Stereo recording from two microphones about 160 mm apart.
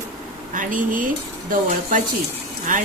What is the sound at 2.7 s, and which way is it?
Speech, 55° right (ahead or behind).